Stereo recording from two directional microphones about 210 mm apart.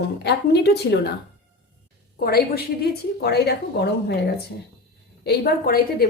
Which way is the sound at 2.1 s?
45° left (ahead or behind).